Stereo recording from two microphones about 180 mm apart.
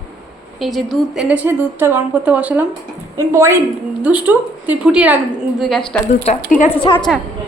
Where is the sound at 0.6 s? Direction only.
Centre (ahead or behind).